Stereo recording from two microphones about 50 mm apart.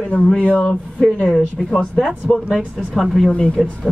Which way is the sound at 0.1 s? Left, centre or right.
Left.